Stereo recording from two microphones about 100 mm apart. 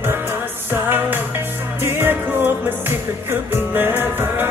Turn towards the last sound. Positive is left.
turn(degrees=-20)  # may be behind; listen again after turning